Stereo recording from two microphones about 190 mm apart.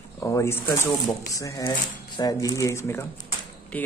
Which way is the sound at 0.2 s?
15° left (ahead or behind).